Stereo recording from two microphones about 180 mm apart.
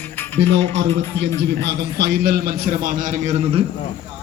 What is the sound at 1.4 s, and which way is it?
A man's voice, 70° right (ahead or behind).